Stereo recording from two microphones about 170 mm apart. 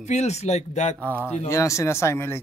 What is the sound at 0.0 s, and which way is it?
Speech, 40° left (ahead or behind).